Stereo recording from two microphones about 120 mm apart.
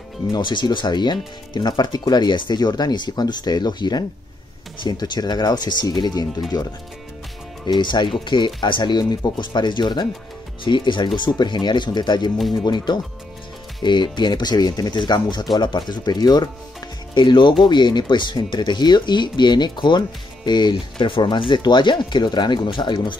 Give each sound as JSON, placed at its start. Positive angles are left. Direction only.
{"t": 0.4, "sound": "speech", "side_deg": 40}
{"t": 7.6, "sound": "speech", "side_deg": 40}